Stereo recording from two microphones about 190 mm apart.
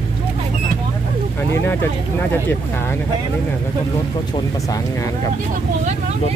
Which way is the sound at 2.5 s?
15° left (ahead or behind).